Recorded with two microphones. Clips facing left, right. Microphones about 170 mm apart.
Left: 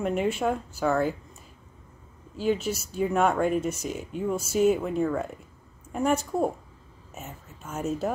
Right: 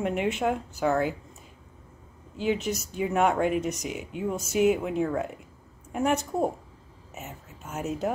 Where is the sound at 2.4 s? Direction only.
20° right (ahead or behind).